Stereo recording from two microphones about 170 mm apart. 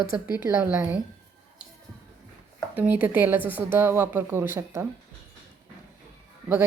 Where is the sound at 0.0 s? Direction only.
60° left (ahead or behind).